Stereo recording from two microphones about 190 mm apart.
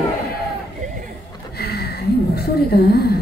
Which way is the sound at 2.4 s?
55° left (ahead or behind).